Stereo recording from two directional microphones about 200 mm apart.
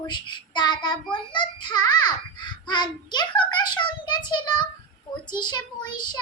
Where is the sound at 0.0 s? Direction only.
20° left (ahead or behind).